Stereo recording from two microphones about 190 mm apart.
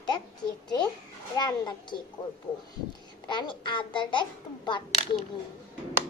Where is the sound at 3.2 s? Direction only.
25° left (ahead or behind).